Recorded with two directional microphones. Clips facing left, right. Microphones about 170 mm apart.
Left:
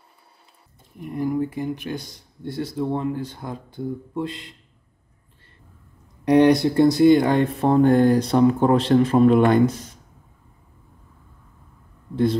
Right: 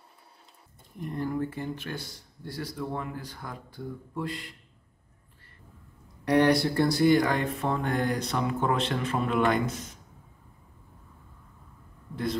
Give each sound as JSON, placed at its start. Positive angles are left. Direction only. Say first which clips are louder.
{"t": 0.9, "sound": "speech", "louder": "left 6 dB", "side_deg": 5}
{"t": 6.2, "sound": "speech", "louder": "left 7 dB", "side_deg": 20}